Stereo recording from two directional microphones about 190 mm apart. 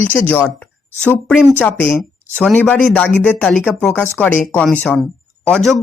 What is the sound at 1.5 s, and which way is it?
Speech, 10° left (ahead or behind).